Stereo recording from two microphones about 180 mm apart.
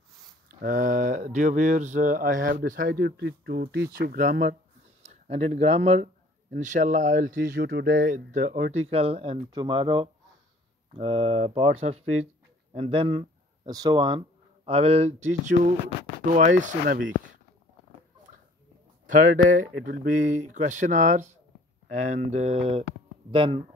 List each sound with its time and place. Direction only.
0.5 s speech: 50° right (ahead or behind)
5.0 s speech: 40° right (ahead or behind)
19.0 s speech: 45° right (ahead or behind); by 23.6 s 30° right (ahead or behind)